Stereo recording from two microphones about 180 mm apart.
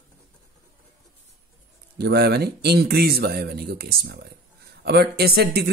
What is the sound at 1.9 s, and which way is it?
Speech, 65° right (ahead or behind).